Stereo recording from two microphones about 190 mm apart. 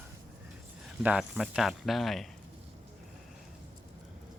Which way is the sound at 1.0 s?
5° right (ahead or behind).